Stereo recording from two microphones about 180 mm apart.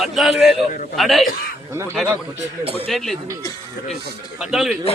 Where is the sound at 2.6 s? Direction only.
35° right (ahead or behind).